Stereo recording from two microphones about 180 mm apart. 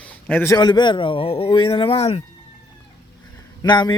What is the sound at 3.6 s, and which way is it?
Speech, 25° left (ahead or behind).